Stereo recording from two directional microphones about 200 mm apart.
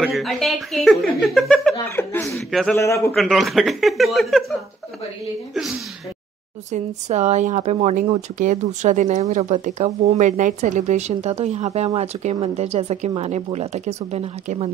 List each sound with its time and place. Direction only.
0.0 s speech: centre (ahead or behind)
1.9 s speech: 10° left (ahead or behind)
2.8 s speech: 15° left (ahead or behind)
3.2 s speech: centre (ahead or behind)
6.7 s speech: 35° right (ahead or behind)